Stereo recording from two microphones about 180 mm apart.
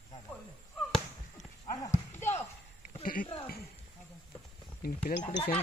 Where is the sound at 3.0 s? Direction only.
50° left (ahead or behind).